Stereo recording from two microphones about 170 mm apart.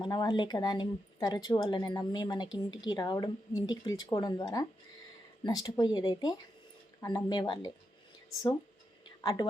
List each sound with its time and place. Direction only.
0.0 s a woman's voice: 25° left (ahead or behind)
9.2 s a woman's voice: 25° left (ahead or behind)